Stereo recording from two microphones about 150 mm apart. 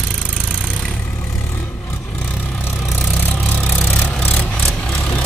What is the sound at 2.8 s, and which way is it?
Vehicle, centre (ahead or behind).